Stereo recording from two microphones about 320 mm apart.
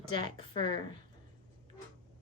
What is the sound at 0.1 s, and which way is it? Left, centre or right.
Speech, centre.